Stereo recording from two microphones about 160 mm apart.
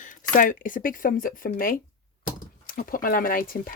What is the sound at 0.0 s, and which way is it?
Speech, 55° left (ahead or behind).